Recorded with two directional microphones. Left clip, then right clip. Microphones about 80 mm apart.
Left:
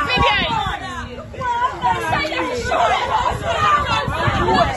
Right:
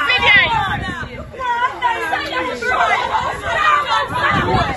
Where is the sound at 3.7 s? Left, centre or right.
Left.